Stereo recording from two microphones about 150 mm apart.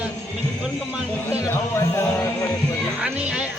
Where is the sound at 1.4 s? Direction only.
15° left (ahead or behind).